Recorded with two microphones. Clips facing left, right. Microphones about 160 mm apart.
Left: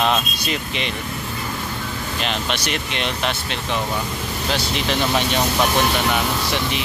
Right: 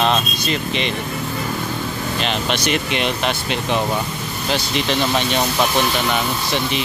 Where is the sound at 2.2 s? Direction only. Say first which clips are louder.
Right 2 dB; centre (ahead or behind).